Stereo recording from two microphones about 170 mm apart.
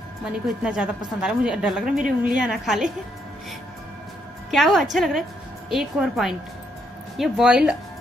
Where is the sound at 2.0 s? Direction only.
50° right (ahead or behind).